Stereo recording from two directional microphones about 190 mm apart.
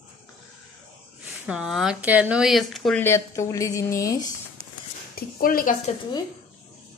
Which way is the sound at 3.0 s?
15° left (ahead or behind).